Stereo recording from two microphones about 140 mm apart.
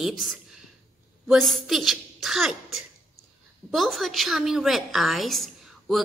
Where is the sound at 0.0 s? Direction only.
Centre (ahead or behind).